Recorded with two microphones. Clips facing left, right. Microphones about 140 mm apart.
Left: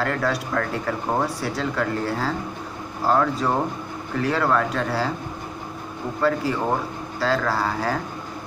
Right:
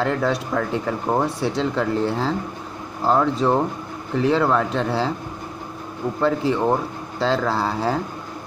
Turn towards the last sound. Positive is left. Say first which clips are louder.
# right 2 dB
turn(degrees=-25)  # may be behind; listen again after turning